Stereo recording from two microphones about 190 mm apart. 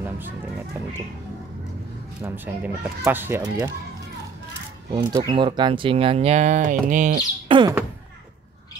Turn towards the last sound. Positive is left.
turn(degrees=-25)  # may be behind; listen again after turning